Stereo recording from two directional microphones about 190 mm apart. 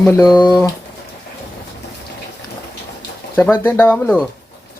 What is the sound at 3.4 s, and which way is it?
Speech, 10° left (ahead or behind).